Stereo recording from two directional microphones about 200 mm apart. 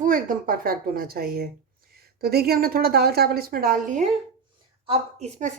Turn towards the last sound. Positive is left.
turn(degrees=-35)  # may be behind; listen again after turning